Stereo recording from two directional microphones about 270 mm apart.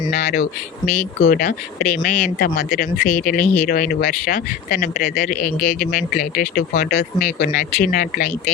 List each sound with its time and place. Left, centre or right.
0.1 s speech: left